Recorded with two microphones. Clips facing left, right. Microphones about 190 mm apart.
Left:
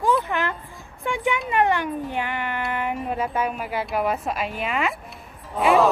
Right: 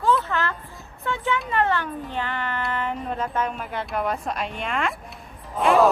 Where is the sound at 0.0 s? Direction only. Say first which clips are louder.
Even; 15° left (ahead or behind).